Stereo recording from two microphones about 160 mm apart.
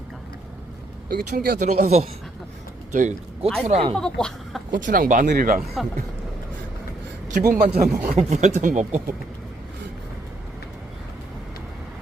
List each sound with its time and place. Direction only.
1.0 s speech: 80° right
1.6 s speech: 45° right (ahead or behind)
3.6 s speech: 40° right (ahead or behind)
3.9 s speech: centre (ahead or behind)
4.7 s speech: 55° right (ahead or behind)
5.5 s speech: centre (ahead or behind)
7.4 s speech: 55° right (ahead or behind)
8.0 s speech: 45° right (ahead or behind)